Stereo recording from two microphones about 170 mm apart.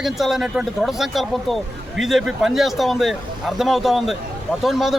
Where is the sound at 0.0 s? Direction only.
Centre (ahead or behind).